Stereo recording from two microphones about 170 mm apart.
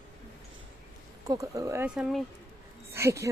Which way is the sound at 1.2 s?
20° right (ahead or behind).